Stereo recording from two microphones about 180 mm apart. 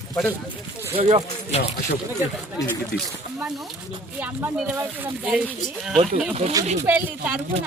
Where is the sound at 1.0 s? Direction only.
30° right (ahead or behind).